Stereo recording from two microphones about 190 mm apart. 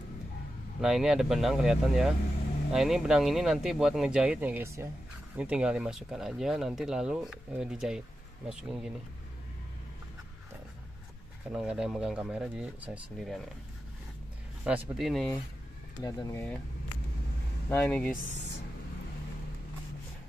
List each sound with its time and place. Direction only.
0.7 s speech: centre (ahead or behind)
11.5 s speech: 5° right (ahead or behind)
14.7 s speech: centre (ahead or behind)
16.0 s speech: 20° left (ahead or behind)
17.6 s speech: 10° left (ahead or behind)